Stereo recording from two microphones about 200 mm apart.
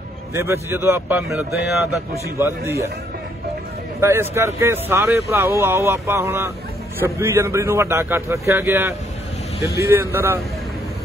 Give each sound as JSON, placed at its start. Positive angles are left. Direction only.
{"t": 0.3, "sound": "speech", "side_deg": -15}
{"t": 1.3, "sound": "speech", "side_deg": 0}
{"t": 2.3, "sound": "speech", "side_deg": -15}
{"t": 4.0, "sound": "speech", "side_deg": -10}
{"t": 9.9, "sound": "speech", "side_deg": -10}